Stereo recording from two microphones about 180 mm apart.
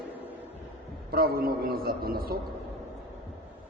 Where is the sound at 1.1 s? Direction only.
55° right (ahead or behind).